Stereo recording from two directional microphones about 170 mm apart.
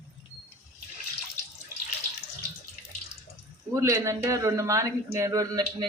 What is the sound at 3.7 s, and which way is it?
A man's voice, 20° right (ahead or behind).